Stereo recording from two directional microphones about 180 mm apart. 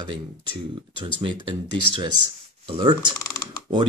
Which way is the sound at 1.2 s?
30° right (ahead or behind).